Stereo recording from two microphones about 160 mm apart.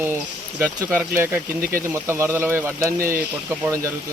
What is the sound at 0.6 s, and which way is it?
Speech, 10° right (ahead or behind).